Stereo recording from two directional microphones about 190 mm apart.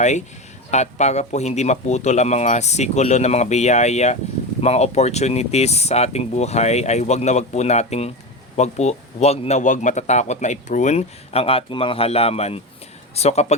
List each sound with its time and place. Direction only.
0.7 s a man's voice: 35° left (ahead or behind)